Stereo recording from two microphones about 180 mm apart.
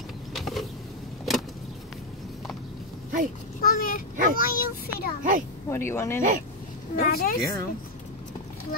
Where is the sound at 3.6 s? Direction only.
50° left (ahead or behind).